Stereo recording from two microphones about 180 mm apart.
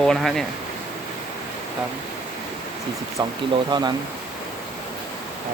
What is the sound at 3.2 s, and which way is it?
Speech, 25° right (ahead or behind).